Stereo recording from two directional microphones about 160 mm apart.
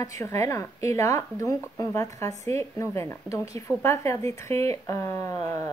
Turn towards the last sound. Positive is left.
turn(degrees=20)  # may be behind; listen again after turning